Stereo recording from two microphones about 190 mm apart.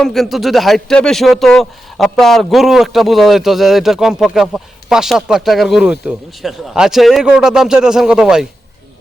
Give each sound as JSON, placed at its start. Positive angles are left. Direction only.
{"t": 0.0, "sound": "speech", "side_deg": 0}